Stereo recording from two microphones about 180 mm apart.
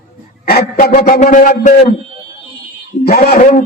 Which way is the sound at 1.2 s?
45° left (ahead or behind).